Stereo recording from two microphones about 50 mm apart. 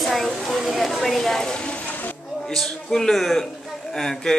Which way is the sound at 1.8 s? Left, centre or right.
Left.